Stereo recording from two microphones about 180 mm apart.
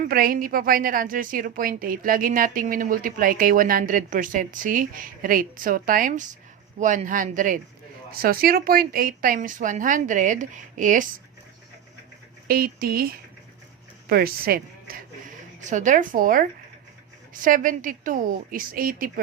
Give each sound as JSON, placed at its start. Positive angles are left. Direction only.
{"t": 0.1, "sound": "a woman's voice", "side_deg": -55}
{"t": 12.5, "sound": "a woman's voice", "side_deg": -55}